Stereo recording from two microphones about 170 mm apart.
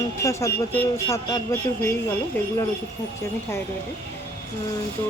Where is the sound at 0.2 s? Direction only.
15° left (ahead or behind).